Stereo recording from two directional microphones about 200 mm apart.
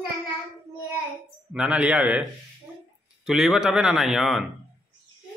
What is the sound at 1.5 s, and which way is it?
A man's voice, 5° right (ahead or behind).